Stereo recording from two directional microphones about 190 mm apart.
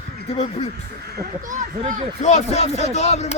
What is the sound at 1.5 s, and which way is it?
Speech, 40° right (ahead or behind).